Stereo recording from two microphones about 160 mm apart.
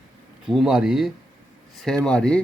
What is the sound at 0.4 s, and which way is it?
A man's voice, 5° right (ahead or behind).